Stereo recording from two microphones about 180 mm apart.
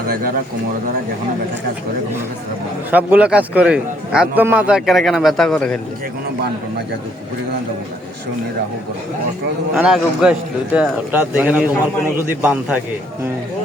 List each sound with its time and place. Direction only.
0.1 s speech: 55° right (ahead or behind)
2.9 s a man's voice: 10° right (ahead or behind)
9.7 s a man's voice: 5° right (ahead or behind)